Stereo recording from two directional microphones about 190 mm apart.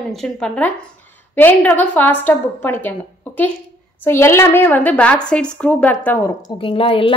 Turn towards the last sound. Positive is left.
turn(degrees=30)  # may be behind; listen again after turning